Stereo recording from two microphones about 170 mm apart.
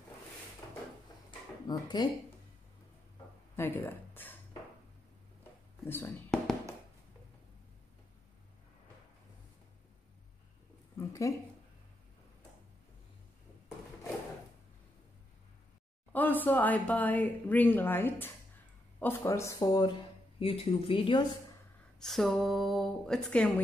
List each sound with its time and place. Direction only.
1.7 s speech: 25° left (ahead or behind)
3.5 s a sound: 10° left (ahead or behind)
5.9 s speech: 10° left (ahead or behind)
11.0 s a sound: 20° left (ahead or behind)
16.1 s speech: 10° left (ahead or behind); by 21.3 s 30° left (ahead or behind)
22.0 s speech: centre (ahead or behind)